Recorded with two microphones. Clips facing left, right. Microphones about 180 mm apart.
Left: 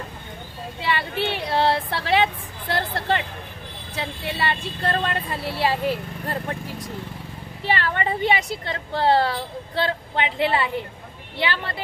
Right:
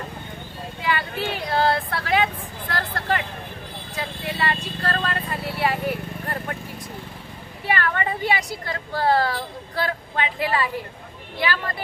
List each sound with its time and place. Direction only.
0.7 s vehicle: 25° left (ahead or behind)
3.9 s a woman's voice: 25° left (ahead or behind)
7.6 s a woman's voice: 25° left (ahead or behind)